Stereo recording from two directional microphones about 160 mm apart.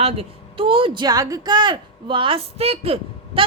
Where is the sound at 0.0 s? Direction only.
35° right (ahead or behind).